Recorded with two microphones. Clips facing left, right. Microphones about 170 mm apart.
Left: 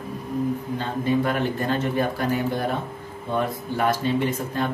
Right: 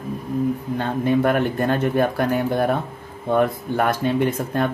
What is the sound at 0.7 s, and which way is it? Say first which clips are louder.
Speech: right 4 dB; 55° right (ahead or behind).